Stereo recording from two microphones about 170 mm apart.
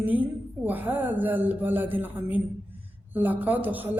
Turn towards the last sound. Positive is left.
turn(degrees=-10)  # may be behind; listen again after turning